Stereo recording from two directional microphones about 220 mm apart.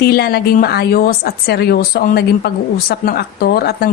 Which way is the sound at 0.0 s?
45° left (ahead or behind).